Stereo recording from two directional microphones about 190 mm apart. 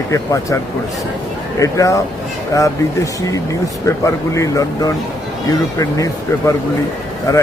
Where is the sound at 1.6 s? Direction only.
15° left (ahead or behind).